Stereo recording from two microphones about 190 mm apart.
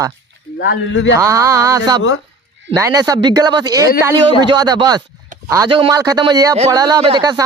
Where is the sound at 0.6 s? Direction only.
65° left (ahead or behind).